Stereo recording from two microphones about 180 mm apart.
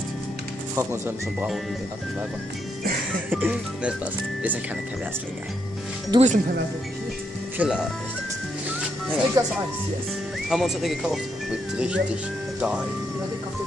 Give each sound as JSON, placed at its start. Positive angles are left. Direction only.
{"t": 0.7, "sound": "speech", "side_deg": -10}
{"t": 3.3, "sound": "speech", "side_deg": -10}
{"t": 6.1, "sound": "speech", "side_deg": -25}
{"t": 7.5, "sound": "speech", "side_deg": -5}
{"t": 8.6, "sound": "music", "side_deg": -10}
{"t": 10.5, "sound": "speech", "side_deg": 0}